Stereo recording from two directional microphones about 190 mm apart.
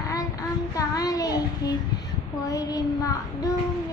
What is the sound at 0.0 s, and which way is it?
Child singing, 20° left (ahead or behind).